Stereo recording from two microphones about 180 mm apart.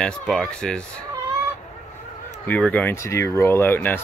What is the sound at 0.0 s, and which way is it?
Speech, 5° left (ahead or behind).